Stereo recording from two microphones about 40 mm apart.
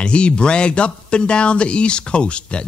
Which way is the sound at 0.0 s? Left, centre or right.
Left.